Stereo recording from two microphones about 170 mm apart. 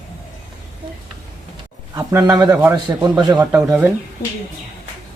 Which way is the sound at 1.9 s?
20° right (ahead or behind).